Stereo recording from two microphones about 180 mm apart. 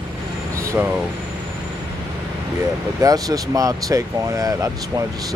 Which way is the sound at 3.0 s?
20° right (ahead or behind).